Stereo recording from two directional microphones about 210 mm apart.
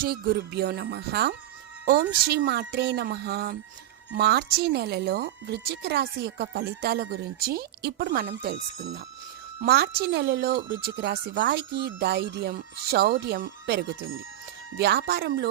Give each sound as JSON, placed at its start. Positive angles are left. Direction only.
{"t": 0.0, "sound": "speech", "side_deg": -45}